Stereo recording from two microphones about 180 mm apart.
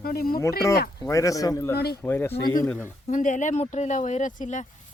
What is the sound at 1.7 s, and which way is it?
Speech, 60° left (ahead or behind).